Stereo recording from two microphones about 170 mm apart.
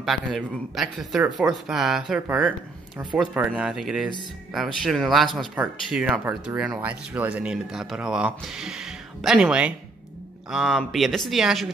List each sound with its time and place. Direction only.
0.0 s speech: centre (ahead or behind)